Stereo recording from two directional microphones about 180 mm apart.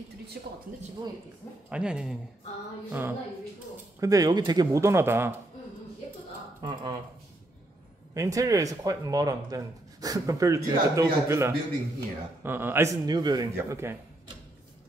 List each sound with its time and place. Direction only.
0.3 s speech: 55° right (ahead or behind)
1.7 s speech: 5° right (ahead or behind)
6.6 s speech: 25° right (ahead or behind)
8.1 s speech: 20° right (ahead or behind)